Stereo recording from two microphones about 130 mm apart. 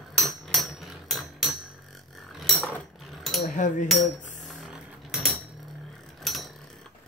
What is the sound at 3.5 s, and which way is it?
Cutlery, 75° left (ahead or behind).